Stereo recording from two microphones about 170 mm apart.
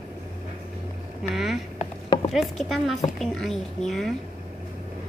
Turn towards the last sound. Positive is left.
turn(degrees=0)  # may be behind; listen again after turning